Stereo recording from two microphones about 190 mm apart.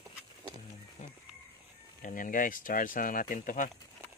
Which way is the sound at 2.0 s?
45° left (ahead or behind).